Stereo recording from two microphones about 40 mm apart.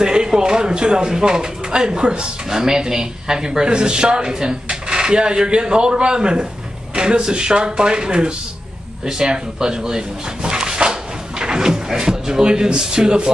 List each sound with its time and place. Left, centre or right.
0.0 s speech: centre